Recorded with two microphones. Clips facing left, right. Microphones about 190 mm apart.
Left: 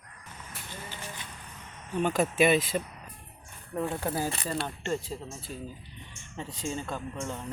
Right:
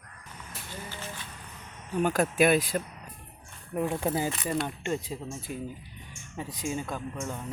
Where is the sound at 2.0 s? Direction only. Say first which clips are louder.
Right 1 dB; 5° right (ahead or behind).